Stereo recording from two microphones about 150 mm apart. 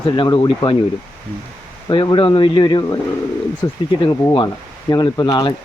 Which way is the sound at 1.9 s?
30° left (ahead or behind).